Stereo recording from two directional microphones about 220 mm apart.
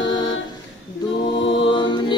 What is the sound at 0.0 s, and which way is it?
A capella, 20° left (ahead or behind).